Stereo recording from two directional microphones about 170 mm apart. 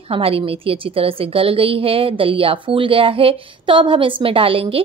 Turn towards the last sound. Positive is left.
turn(degrees=-35)  # may be behind; listen again after turning